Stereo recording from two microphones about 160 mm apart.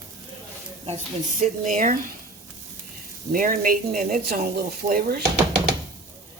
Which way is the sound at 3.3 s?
60° right (ahead or behind).